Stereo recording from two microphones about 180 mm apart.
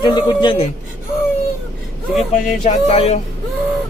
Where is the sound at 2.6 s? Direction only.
35° left (ahead or behind).